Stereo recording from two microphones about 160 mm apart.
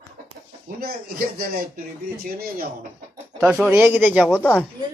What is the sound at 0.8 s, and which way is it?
Speech, 70° right (ahead or behind).